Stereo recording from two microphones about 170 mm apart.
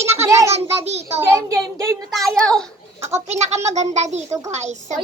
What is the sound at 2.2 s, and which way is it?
Speech, 5° left (ahead or behind).